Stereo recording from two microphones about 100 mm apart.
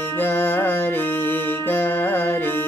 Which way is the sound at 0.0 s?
20° left (ahead or behind).